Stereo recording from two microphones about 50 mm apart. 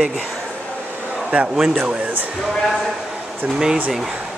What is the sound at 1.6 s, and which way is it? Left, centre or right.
Speech, centre.